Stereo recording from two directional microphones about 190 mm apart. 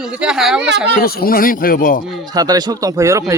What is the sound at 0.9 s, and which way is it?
Speech, 50° left (ahead or behind).